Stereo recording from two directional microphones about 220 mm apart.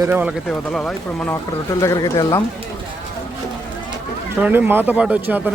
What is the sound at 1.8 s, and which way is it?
Speech, 15° left (ahead or behind).